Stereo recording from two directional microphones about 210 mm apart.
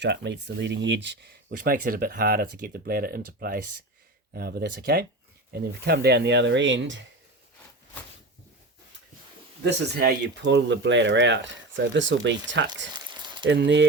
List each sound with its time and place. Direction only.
0.0 s speech: 55° right (ahead or behind)
1.5 s speech: 40° right (ahead or behind); by 7.0 s 60° right (ahead or behind)
9.6 s speech: 50° right (ahead or behind)
12.9 s a sound: 20° right (ahead or behind)
13.5 s speech: 60° right (ahead or behind)